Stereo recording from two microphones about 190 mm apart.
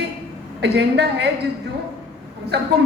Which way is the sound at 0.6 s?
60° right (ahead or behind).